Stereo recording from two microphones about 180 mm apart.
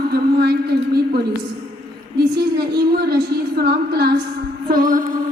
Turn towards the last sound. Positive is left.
turn(degrees=-50)  # may be behind; listen again after turning